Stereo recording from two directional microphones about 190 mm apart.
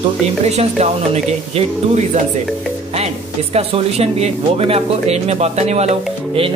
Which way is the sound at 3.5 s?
35° right (ahead or behind).